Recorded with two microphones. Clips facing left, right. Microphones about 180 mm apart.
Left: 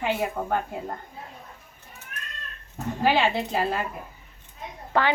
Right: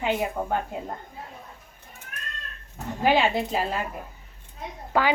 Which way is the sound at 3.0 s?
15° right (ahead or behind).